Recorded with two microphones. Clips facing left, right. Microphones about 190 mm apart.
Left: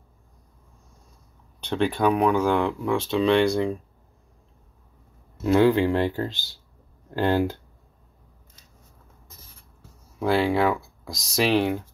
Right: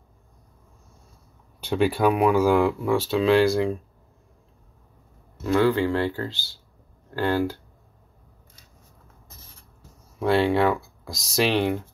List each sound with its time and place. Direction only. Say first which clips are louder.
1.6 s speech: right 2 dB; 5° right (ahead or behind)
5.4 s speech: left 2 dB; 15° left (ahead or behind)
10.1 s speech: right 1 dB; centre (ahead or behind)